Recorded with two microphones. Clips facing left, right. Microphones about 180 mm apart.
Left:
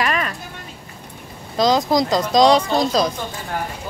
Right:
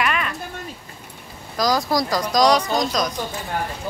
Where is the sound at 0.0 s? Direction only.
35° left (ahead or behind).